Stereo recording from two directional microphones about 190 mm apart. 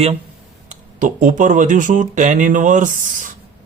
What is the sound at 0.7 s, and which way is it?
Speech, 45° right (ahead or behind).